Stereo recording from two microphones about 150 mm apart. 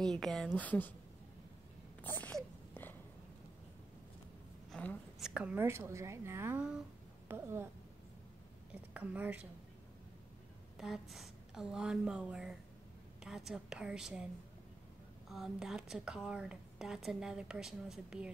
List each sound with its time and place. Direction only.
0.0 s speech: 5° left (ahead or behind)
2.0 s a sound: 10° left (ahead or behind)
4.6 s a sound: 5° left (ahead or behind)
5.2 s speech: 10° right (ahead or behind)
8.9 s speech: 10° right (ahead or behind)
10.8 s speech: centre (ahead or behind)
15.2 s speech: centre (ahead or behind)